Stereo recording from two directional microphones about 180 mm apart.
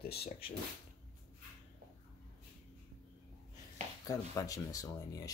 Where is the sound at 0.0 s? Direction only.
60° left (ahead or behind).